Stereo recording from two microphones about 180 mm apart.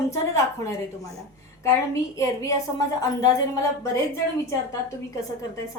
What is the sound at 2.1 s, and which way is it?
A woman's voice, 15° left (ahead or behind).